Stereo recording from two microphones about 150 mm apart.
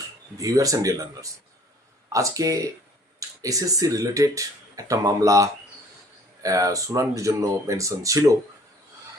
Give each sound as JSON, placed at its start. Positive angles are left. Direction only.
{"t": 0.3, "sound": "speech", "side_deg": -20}